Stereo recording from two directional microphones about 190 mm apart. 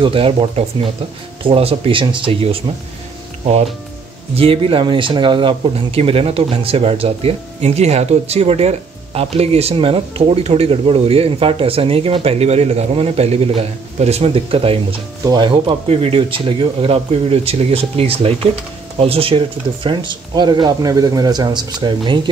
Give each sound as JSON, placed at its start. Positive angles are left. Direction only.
{"t": 0.0, "sound": "speech", "side_deg": -30}
{"t": 4.4, "sound": "speech", "side_deg": -30}